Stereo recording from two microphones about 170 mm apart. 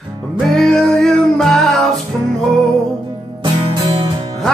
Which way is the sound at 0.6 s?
5° left (ahead or behind).